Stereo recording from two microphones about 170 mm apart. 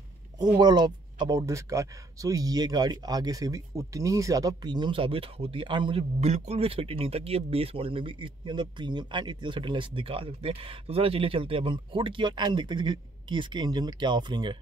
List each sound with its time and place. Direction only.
0.4 s speech: 25° right (ahead or behind)